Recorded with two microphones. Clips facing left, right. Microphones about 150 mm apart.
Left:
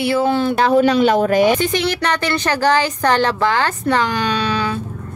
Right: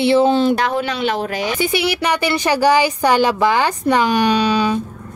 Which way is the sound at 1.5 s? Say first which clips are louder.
Even; 10° right (ahead or behind).